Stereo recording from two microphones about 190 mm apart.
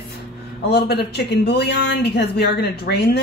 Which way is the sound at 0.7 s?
60° left (ahead or behind).